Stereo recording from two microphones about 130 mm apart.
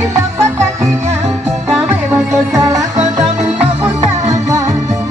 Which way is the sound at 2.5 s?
25° right (ahead or behind).